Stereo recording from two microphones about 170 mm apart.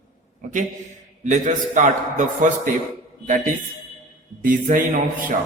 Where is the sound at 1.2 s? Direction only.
45° right (ahead or behind).